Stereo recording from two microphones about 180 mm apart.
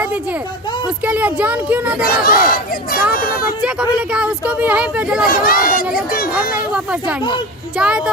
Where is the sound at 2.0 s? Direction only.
55° left (ahead or behind).